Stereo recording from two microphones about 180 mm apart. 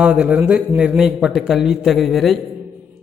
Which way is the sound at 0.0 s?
5° right (ahead or behind).